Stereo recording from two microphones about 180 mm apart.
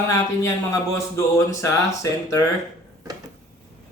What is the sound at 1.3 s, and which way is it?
Speech, 15° left (ahead or behind).